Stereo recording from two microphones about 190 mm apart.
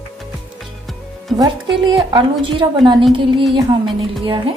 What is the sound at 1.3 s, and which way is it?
Music, centre (ahead or behind).